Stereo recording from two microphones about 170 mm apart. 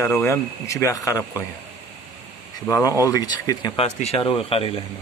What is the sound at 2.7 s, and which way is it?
Speech, 20° left (ahead or behind).